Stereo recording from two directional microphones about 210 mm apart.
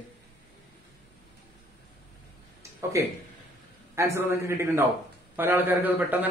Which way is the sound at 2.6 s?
15° right (ahead or behind).